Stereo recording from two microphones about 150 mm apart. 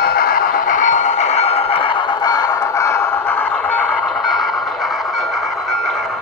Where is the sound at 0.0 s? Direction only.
80° left; by 4.2 s 10° left (ahead or behind).